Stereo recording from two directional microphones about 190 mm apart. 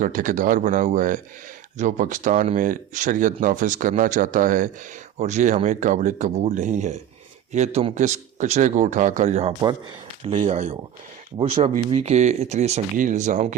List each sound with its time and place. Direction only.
0.0 s a man's voice: 45° right (ahead or behind)